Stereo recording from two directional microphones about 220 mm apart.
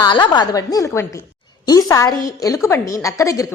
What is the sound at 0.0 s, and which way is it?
A woman's voice, 20° left (ahead or behind).